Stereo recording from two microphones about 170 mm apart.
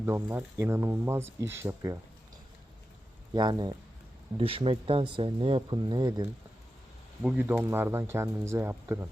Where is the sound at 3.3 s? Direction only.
25° right (ahead or behind).